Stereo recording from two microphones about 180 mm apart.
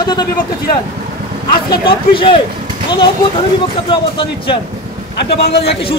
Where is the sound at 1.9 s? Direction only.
30° left (ahead or behind).